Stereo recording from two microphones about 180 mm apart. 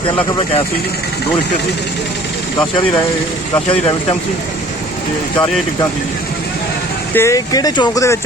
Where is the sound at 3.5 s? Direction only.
30° left (ahead or behind).